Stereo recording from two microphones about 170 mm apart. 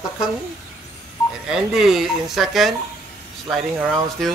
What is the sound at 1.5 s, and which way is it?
Music, centre (ahead or behind).